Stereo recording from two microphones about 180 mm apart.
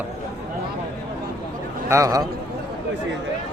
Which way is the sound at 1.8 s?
15° right (ahead or behind).